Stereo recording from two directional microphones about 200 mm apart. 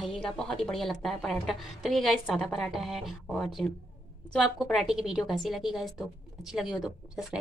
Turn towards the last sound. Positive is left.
turn(degrees=0)  # may be behind; listen again after turning